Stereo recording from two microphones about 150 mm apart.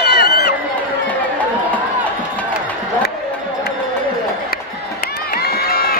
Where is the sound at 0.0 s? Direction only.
90° left.